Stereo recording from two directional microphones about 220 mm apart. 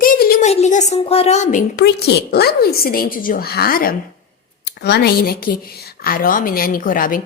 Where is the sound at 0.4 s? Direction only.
30° left (ahead or behind).